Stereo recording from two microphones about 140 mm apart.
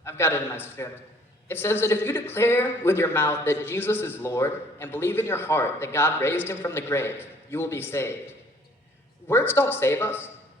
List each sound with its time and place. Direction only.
0.0 s speech: 20° left (ahead or behind)